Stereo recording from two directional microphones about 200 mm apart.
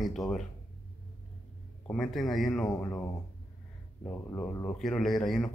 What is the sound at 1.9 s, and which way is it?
Speech, centre (ahead or behind).